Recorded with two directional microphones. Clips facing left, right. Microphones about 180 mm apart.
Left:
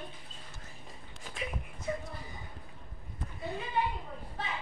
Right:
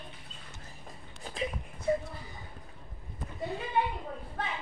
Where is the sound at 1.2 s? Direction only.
35° right (ahead or behind).